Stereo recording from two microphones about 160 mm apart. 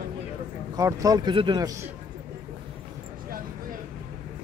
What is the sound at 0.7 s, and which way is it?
Speech, 20° right (ahead or behind).